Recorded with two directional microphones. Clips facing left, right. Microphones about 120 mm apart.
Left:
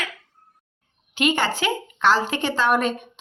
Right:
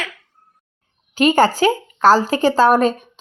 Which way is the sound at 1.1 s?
40° right (ahead or behind).